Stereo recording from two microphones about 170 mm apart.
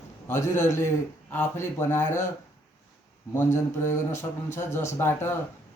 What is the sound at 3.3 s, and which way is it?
A man's voice, 15° left (ahead or behind).